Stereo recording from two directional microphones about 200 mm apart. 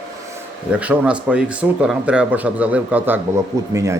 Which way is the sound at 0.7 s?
5° right (ahead or behind).